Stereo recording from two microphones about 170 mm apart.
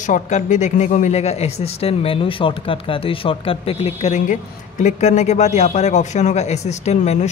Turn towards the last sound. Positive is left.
turn(degrees=40)  # may be behind; listen again after turning